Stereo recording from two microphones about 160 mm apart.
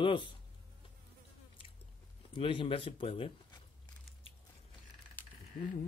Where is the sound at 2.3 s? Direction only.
35° left (ahead or behind).